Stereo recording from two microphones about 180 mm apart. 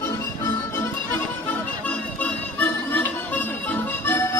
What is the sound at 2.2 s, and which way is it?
Music, 10° left (ahead or behind).